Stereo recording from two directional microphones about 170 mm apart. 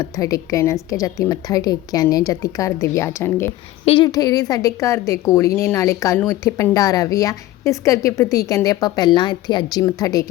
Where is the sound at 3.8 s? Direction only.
30° left (ahead or behind).